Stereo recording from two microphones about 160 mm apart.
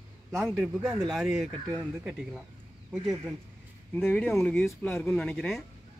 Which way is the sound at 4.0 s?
10° left (ahead or behind).